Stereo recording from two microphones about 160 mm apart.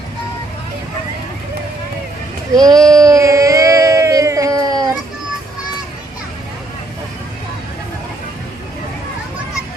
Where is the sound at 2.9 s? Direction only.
20° right (ahead or behind).